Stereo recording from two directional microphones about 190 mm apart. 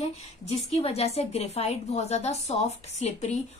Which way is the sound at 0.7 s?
30° left (ahead or behind).